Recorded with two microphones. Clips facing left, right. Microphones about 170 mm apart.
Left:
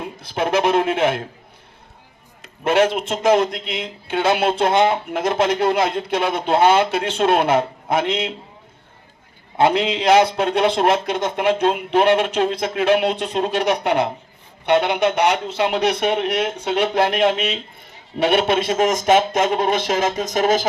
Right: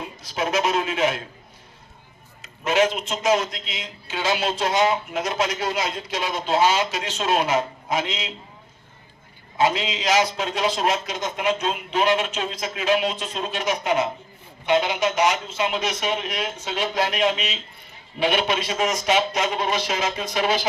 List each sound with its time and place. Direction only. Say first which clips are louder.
0.0 s speech: left 4 dB; 55° left (ahead or behind)
2.4 s speech: left 4 dB; 60° left (ahead or behind)
9.6 s a man's voice: left 5 dB; 60° left (ahead or behind)